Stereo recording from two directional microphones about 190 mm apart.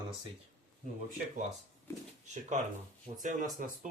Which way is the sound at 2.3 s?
40° right (ahead or behind).